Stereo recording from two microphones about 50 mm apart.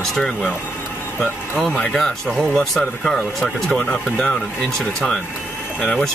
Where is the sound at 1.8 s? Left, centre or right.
Centre.